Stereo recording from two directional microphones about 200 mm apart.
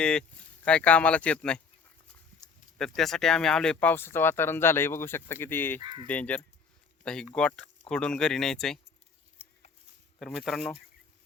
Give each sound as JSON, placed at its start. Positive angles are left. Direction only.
{"t": 0.0, "sound": "speech", "side_deg": 5}
{"t": 2.4, "sound": "a sound", "side_deg": 20}
{"t": 2.7, "sound": "speech", "side_deg": 0}
{"t": 10.2, "sound": "speech", "side_deg": 0}